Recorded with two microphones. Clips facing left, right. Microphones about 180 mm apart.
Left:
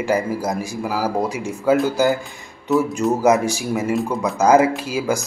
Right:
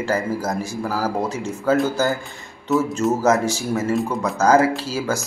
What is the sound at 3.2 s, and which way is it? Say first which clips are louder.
A man's voice: left 2 dB; 15° left (ahead or behind).